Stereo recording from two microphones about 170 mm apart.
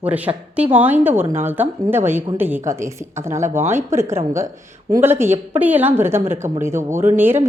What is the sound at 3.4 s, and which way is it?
Speech, 45° right (ahead or behind).